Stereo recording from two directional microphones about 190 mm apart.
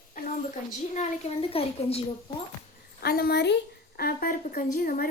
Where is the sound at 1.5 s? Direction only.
30° left (ahead or behind).